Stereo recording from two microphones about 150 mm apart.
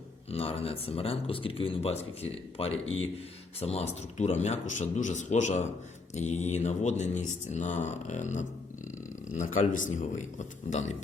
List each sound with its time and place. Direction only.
0.3 s a man's voice: 40° left (ahead or behind)